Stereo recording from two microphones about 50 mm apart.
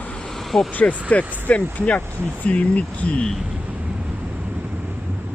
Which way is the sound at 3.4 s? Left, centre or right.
Right.